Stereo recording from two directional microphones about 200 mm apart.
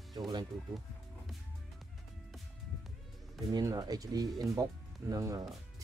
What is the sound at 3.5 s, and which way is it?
Speech, 20° right (ahead or behind).